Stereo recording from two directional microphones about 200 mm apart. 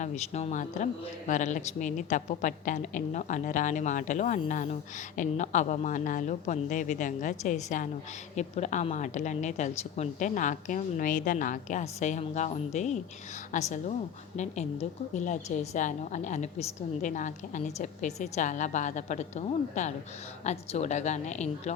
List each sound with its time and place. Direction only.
0.0 s a woman's voice: 35° left (ahead or behind)